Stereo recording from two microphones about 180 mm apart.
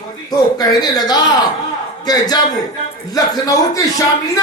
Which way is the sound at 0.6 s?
20° left (ahead or behind).